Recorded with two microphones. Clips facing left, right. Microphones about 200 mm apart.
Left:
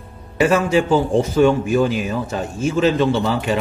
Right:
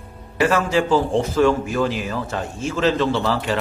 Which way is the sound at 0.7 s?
25° left (ahead or behind).